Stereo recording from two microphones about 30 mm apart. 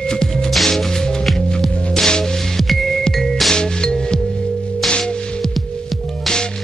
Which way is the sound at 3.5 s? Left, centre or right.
Left.